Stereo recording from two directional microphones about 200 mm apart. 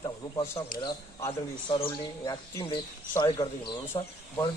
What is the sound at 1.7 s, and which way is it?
Speech, 25° left (ahead or behind).